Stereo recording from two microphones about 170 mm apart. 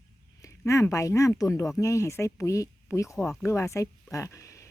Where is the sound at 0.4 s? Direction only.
20° left (ahead or behind).